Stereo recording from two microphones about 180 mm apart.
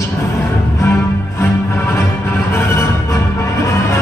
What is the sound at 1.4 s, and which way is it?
Music, 15° left (ahead or behind).